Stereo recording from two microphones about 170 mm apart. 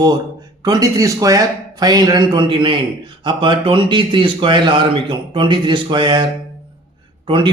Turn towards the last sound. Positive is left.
turn(degrees=-30)  # may be behind; listen again after turning